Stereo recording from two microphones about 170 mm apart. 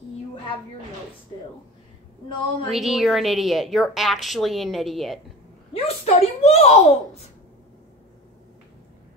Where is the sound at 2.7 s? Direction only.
Centre (ahead or behind).